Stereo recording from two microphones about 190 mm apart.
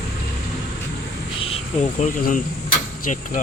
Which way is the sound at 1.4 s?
30° left (ahead or behind).